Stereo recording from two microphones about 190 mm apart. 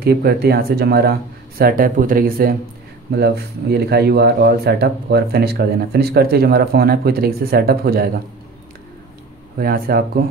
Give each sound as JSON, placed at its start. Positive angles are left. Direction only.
{"t": 0.0, "sound": "speech", "side_deg": -55}
{"t": 9.6, "sound": "speech", "side_deg": -55}